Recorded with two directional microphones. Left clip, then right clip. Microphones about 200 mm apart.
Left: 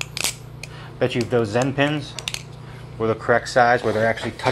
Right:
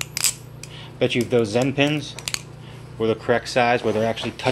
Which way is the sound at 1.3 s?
15° right (ahead or behind).